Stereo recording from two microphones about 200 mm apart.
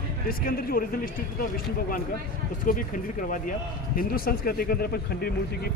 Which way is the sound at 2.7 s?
40° left (ahead or behind).